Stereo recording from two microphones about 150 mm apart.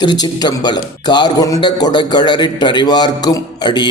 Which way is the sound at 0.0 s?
30° left (ahead or behind).